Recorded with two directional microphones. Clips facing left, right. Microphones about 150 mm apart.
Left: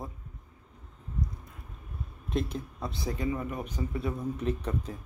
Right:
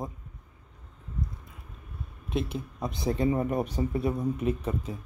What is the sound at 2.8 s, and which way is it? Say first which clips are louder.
Speech: right 6 dB; 20° right (ahead or behind).